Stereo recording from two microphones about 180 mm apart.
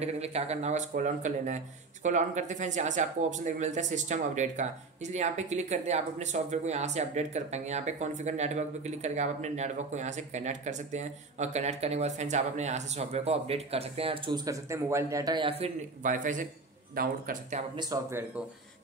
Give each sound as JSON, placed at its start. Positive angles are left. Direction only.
{"t": 0.0, "sound": "speech", "side_deg": -35}
{"t": 16.0, "sound": "speech", "side_deg": -45}
{"t": 17.7, "sound": "speech", "side_deg": -20}